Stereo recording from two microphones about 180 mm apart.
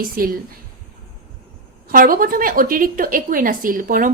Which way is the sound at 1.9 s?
50° right (ahead or behind).